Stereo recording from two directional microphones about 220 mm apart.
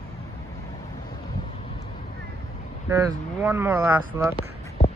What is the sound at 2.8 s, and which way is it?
Speech, 10° right (ahead or behind).